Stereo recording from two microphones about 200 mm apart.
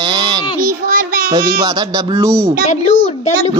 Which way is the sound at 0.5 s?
45° right (ahead or behind).